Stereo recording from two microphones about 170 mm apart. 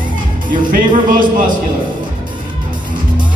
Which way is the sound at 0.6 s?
55° right (ahead or behind).